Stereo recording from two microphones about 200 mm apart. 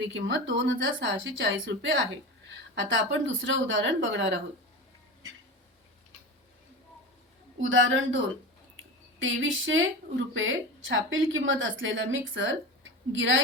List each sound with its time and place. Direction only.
0.1 s a woman's voice: 65° right (ahead or behind)
7.6 s a woman's voice: 75° right (ahead or behind)
8.7 s a sound: 70° right (ahead or behind)
10.3 s a woman's voice: 70° right (ahead or behind)